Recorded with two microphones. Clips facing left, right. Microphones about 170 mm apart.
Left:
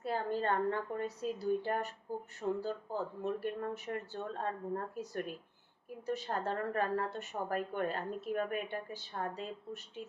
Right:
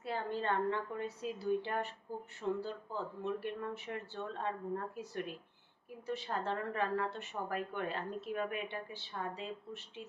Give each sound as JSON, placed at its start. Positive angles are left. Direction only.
{"t": 0.0, "sound": "speech", "side_deg": 45}